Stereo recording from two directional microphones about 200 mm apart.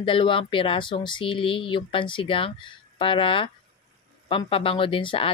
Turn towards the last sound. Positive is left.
turn(degrees=25)  # may be behind; listen again after turning